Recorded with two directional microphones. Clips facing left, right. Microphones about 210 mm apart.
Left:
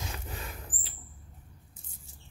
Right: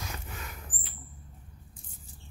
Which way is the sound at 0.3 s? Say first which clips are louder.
Left 2 dB; 30° left (ahead or behind).